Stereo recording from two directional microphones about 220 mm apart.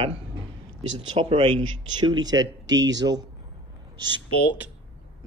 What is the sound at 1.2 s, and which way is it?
A man's voice, 25° right (ahead or behind).